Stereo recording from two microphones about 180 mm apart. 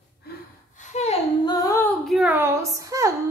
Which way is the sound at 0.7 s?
40° left (ahead or behind).